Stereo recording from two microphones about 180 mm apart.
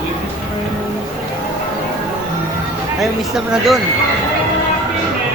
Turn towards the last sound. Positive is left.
turn(degrees=0)  # may be behind; listen again after turning